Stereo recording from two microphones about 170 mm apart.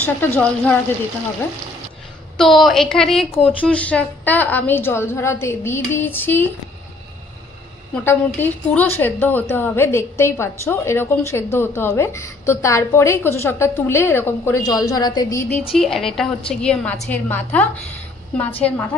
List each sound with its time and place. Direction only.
0.0 s a woman's voice: 10° left (ahead or behind)
2.3 s a woman's voice: centre (ahead or behind)
7.9 s a woman's voice: 15° left (ahead or behind)
15.7 s a woman's voice: centre (ahead or behind)